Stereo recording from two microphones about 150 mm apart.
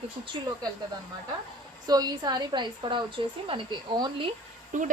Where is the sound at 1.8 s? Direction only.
25° right (ahead or behind).